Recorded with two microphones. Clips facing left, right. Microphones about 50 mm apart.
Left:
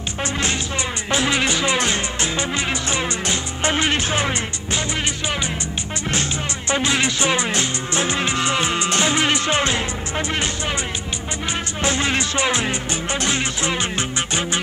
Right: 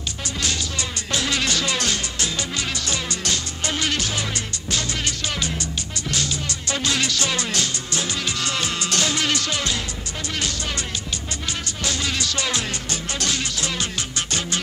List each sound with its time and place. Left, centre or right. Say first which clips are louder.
1.1 s music: left 4 dB; left
6.7 s music: left 4 dB; left
11.8 s music: left 5 dB; left